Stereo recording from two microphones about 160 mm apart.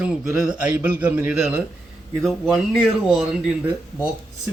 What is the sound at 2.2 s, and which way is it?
Speech, centre (ahead or behind).